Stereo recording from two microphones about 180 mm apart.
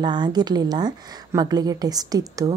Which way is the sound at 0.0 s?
25° right (ahead or behind).